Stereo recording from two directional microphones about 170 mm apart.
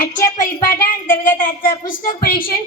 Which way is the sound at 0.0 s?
50° left (ahead or behind).